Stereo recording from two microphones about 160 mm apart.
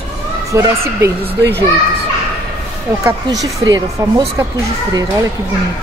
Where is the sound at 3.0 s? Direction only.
20° right (ahead or behind).